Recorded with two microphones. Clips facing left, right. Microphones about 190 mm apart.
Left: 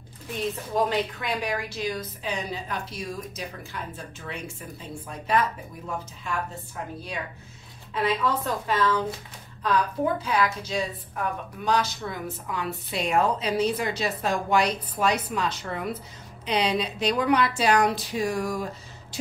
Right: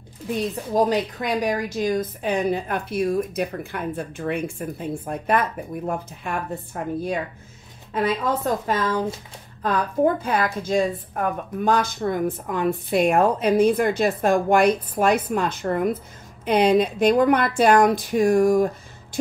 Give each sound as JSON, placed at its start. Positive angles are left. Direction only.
{"t": 0.7, "sound": "a woman's voice", "side_deg": -40}